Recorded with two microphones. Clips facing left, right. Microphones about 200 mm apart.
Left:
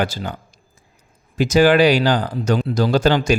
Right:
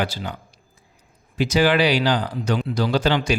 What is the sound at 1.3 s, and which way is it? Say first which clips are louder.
Speech: left 5 dB; 45° left (ahead or behind).